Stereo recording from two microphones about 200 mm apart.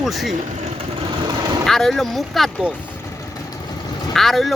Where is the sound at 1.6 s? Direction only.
Centre (ahead or behind).